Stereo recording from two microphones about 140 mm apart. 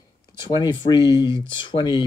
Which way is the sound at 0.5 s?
35° left (ahead or behind).